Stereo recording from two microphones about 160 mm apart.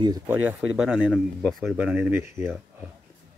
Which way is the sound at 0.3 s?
10° right (ahead or behind).